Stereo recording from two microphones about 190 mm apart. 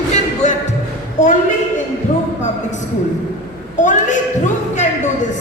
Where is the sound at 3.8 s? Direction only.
40° left (ahead or behind).